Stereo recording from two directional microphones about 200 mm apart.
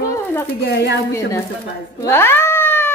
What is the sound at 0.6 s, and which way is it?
Speech, 55° left (ahead or behind).